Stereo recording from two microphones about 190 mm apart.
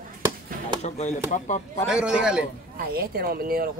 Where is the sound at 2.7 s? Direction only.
55° right (ahead or behind).